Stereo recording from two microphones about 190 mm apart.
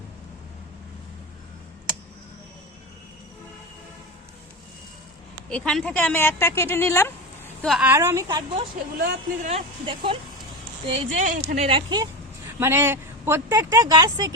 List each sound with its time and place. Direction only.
5.5 s speech: 5° left (ahead or behind)
7.7 s speech: 10° right (ahead or behind)
9.0 s speech: 50° right (ahead or behind)
9.5 s a woman's voice: 30° right (ahead or behind)
11.2 s speech: 35° right (ahead or behind)
12.5 s speech: 15° right (ahead or behind)